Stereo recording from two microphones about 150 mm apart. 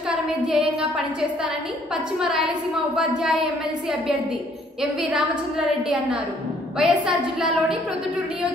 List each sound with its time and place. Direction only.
0.1 s child singing: 5° right (ahead or behind)
2.1 s a woman's voice: centre (ahead or behind)
6.8 s a woman's voice: 5° right (ahead or behind)